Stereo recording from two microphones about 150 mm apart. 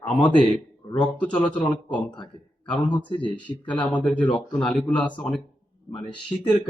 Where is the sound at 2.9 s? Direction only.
10° left (ahead or behind).